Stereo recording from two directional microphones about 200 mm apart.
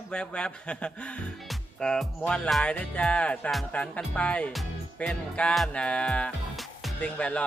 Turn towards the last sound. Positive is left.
turn(degrees=5)  # may be behind; listen again after turning